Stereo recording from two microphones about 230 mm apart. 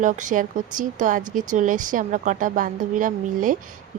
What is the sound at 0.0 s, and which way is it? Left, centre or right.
Speech, right.